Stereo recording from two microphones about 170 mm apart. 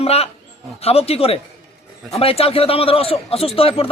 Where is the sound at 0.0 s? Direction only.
35° left (ahead or behind).